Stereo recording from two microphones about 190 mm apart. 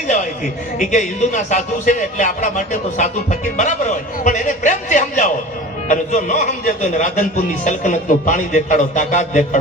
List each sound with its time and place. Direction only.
0.8 s a man's voice: 40° left (ahead or behind)